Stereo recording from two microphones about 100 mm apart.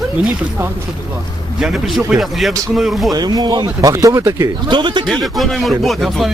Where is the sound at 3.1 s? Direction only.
40° right (ahead or behind).